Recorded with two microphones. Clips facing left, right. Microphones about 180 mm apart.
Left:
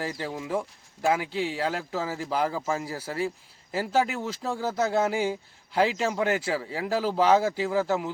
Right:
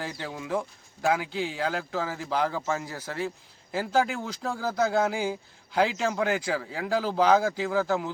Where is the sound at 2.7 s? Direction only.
30° left (ahead or behind).